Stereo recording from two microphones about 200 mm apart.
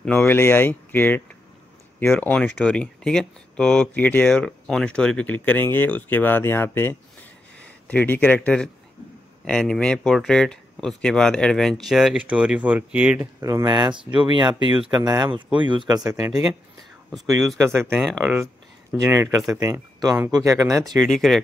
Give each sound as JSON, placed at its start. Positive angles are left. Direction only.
{"t": 0.0, "sound": "speech", "side_deg": 5}
{"t": 17.6, "sound": "speech", "side_deg": -10}
{"t": 21.0, "sound": "speech", "side_deg": 0}